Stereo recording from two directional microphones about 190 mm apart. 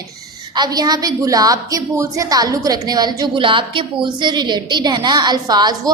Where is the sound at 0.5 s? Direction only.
20° right (ahead or behind).